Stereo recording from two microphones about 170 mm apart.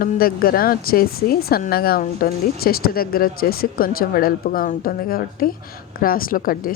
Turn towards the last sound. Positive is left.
turn(degrees=55)  # may be behind; listen again after turning